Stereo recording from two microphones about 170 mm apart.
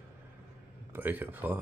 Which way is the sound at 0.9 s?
10° right (ahead or behind).